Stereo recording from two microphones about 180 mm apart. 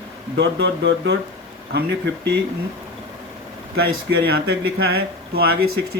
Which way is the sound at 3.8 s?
60° right (ahead or behind).